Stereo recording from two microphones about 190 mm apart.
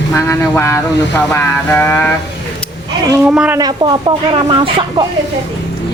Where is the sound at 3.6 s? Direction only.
20° right (ahead or behind).